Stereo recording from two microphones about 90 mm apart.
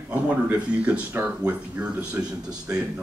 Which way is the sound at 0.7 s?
15° right (ahead or behind).